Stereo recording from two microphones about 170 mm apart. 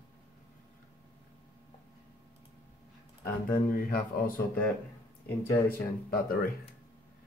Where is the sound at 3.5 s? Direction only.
55° left (ahead or behind).